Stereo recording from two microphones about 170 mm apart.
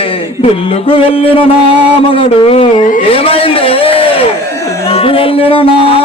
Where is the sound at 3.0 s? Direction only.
35° left (ahead or behind).